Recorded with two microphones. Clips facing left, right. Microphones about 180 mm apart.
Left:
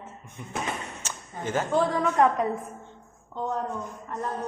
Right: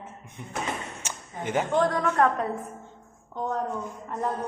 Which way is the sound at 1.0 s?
15° right (ahead or behind).